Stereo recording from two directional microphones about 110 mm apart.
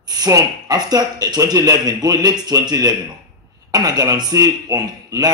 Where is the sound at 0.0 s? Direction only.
35° right (ahead or behind).